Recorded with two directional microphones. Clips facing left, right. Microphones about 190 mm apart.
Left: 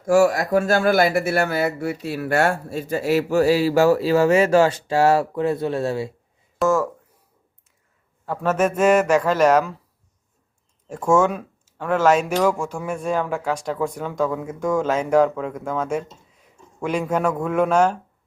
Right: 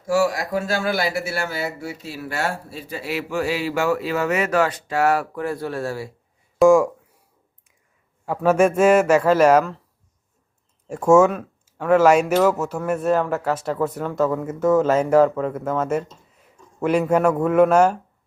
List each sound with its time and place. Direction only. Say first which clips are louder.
0.0 s speech: left 4 dB; 50° left (ahead or behind); by 6.1 s 25° left (ahead or behind)
6.7 s a man's voice: right 6 dB; 15° right (ahead or behind)
8.3 s a man's voice: right 4 dB; 10° right (ahead or behind)
10.8 s a man's voice: right 4 dB; 10° right (ahead or behind)